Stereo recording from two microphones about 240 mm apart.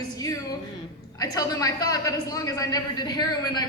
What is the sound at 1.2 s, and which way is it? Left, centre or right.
A woman's voice, centre.